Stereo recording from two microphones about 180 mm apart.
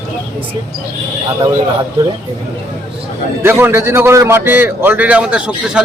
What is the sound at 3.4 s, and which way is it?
A man's voice, 15° right (ahead or behind).